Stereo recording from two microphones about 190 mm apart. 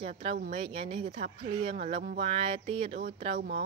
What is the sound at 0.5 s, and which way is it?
A woman's voice, 30° right (ahead or behind).